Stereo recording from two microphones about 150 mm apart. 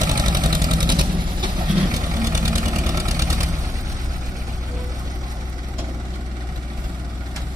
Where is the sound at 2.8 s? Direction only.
20° right (ahead or behind).